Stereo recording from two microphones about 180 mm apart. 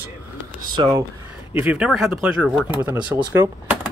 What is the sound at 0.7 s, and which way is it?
Speech, 25° right (ahead or behind).